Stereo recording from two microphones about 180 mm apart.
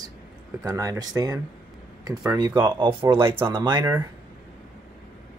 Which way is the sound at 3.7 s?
10° right (ahead or behind).